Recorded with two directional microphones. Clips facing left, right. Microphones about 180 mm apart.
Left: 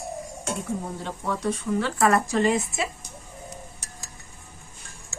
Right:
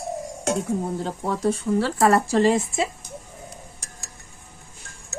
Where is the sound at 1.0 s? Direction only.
35° right (ahead or behind).